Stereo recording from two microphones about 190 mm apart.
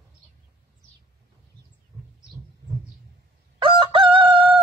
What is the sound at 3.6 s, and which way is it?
Chicken, 25° right (ahead or behind).